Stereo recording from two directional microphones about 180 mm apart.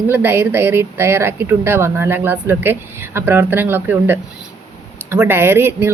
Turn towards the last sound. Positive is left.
turn(degrees=-10)  # may be behind; listen again after turning